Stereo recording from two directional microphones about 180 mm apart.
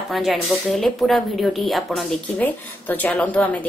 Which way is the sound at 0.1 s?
Centre (ahead or behind).